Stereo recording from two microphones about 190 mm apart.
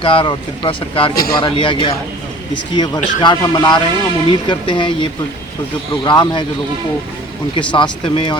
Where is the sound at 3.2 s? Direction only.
20° left (ahead or behind).